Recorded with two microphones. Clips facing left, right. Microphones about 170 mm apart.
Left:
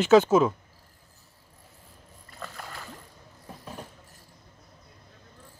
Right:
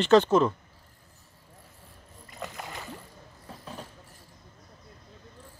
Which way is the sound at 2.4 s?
15° right (ahead or behind).